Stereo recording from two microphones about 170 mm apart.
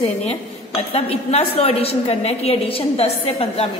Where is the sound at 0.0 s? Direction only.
35° left (ahead or behind).